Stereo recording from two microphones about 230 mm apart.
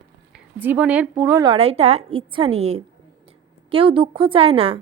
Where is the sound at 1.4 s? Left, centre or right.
Right.